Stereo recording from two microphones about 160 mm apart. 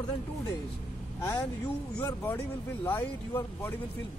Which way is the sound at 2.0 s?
15° left (ahead or behind).